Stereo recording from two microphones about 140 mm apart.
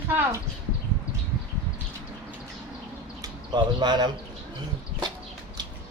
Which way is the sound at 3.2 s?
30° right (ahead or behind).